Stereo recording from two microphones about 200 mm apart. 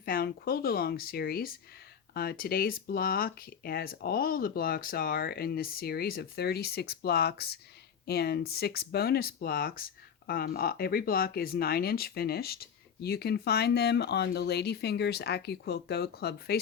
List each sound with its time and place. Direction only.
0.0 s speech: 50° left (ahead or behind)